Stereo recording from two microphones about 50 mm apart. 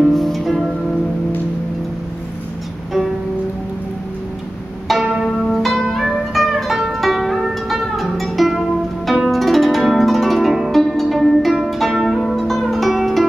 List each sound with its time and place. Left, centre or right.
0.1 s music: centre
5.2 s zither: centre
10.7 s music: centre
11.6 s zither: centre